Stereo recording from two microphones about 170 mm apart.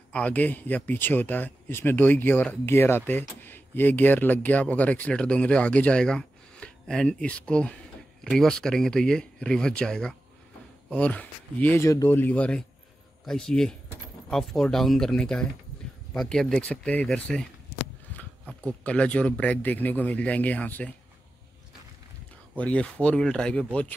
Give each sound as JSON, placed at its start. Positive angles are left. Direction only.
{"t": 0.1, "sound": "speech", "side_deg": 10}
{"t": 18.6, "sound": "speech", "side_deg": 5}
{"t": 22.6, "sound": "speech", "side_deg": 10}